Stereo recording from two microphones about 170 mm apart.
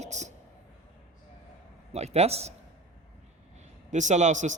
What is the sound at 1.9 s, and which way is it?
Speech, 40° right (ahead or behind).